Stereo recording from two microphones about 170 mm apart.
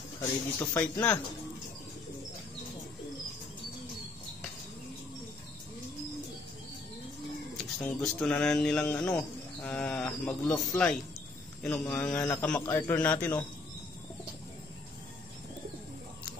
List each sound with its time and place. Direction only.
0.2 s a man's voice: 15° left (ahead or behind)
7.8 s a man's voice: 5° left (ahead or behind)